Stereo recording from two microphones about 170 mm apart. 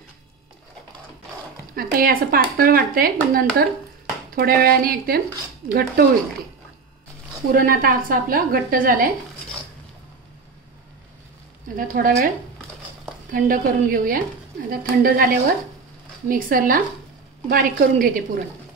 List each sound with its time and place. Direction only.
1.8 s speech: 60° right (ahead or behind)
7.5 s speech: 55° right (ahead or behind)
11.7 s speech: 55° right (ahead or behind)
13.3 s speech: 55° right (ahead or behind)